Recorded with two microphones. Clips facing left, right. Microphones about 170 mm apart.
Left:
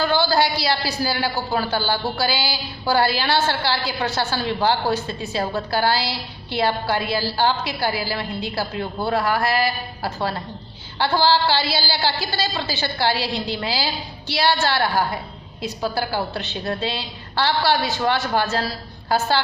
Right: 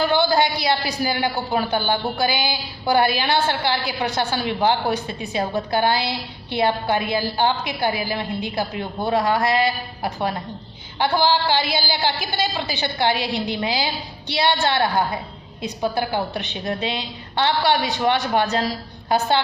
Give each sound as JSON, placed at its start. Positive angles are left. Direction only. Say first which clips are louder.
{"t": 0.0, "sound": "a woman's voice", "louder": "right 1 dB", "side_deg": -20}
{"t": 11.0, "sound": "a sound", "louder": "left 1 dB", "side_deg": -15}
{"t": 11.7, "sound": "a woman's voice", "louder": "even", "side_deg": -15}